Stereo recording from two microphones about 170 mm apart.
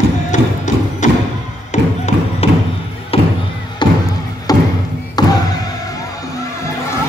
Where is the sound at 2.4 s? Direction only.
35° left (ahead or behind).